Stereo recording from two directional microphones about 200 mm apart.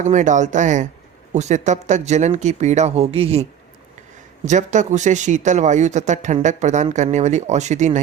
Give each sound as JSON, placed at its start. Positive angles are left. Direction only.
{"t": 0.0, "sound": "speech", "side_deg": -40}
{"t": 4.4, "sound": "speech", "side_deg": -35}